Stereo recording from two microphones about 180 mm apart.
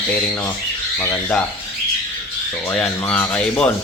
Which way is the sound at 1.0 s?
10° left (ahead or behind).